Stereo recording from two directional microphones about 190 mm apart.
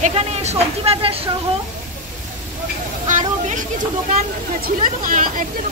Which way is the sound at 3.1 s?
40° right (ahead or behind).